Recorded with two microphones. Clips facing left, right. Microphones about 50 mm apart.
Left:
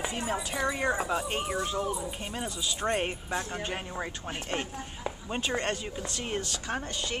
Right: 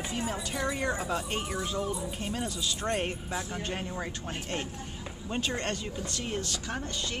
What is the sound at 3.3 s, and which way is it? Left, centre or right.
Speech, left.